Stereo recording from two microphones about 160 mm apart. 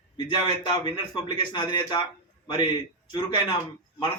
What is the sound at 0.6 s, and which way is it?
A man's voice, 30° left (ahead or behind).